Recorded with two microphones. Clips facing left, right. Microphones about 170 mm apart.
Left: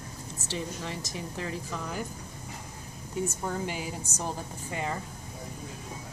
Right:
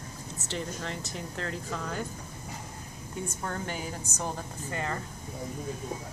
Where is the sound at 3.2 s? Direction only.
10° left (ahead or behind).